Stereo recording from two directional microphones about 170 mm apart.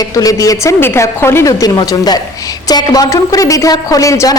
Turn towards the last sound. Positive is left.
turn(degrees=20)  # may be behind; listen again after turning